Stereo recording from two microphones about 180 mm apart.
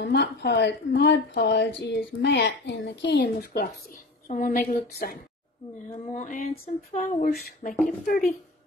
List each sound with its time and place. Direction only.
0.0 s speech: 65° left (ahead or behind)
4.3 s speech: 45° left (ahead or behind)